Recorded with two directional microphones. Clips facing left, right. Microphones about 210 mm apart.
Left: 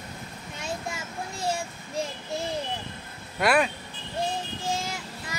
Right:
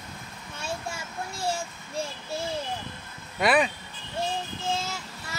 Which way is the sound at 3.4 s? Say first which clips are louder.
Even; centre (ahead or behind).